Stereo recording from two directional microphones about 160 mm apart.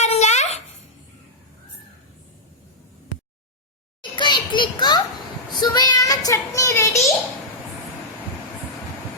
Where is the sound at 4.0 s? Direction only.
30° left (ahead or behind).